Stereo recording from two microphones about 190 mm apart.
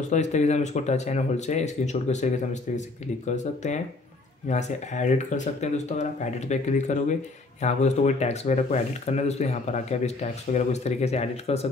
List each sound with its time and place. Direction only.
0.1 s speech: 40° left (ahead or behind)